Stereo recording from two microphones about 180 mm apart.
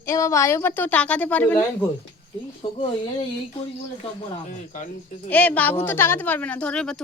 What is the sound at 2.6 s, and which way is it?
Speech, 30° left (ahead or behind).